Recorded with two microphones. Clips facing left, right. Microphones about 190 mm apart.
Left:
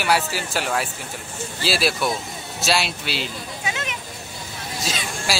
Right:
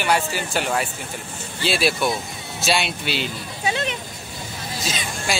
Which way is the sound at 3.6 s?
35° right (ahead or behind).